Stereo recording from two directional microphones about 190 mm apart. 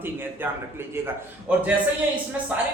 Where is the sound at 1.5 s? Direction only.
10° right (ahead or behind).